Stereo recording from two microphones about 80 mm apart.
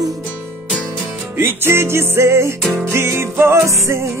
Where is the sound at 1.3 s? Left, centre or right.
Right.